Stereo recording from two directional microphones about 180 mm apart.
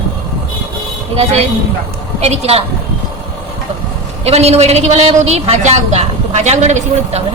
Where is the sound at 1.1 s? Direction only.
35° right (ahead or behind).